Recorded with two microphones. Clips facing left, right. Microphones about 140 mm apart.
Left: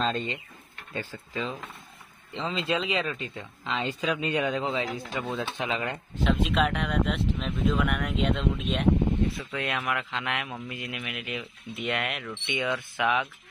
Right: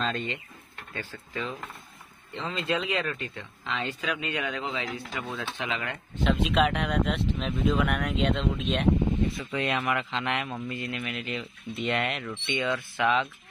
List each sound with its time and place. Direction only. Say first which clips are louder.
0.0 s speech: left 2 dB; 25° left (ahead or behind)
0.9 s speech: left 2 dB; 10° left (ahead or behind)
2.4 s speech: left 1 dB; 25° left (ahead or behind)
6.2 s a man's voice: right 1 dB; centre (ahead or behind)